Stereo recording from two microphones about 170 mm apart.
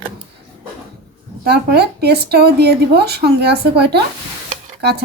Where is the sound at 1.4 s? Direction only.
70° right (ahead or behind).